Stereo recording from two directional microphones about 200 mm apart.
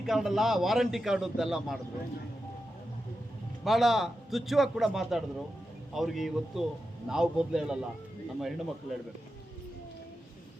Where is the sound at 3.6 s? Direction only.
Centre (ahead or behind).